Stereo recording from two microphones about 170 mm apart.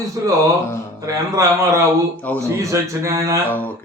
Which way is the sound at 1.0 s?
20° right (ahead or behind).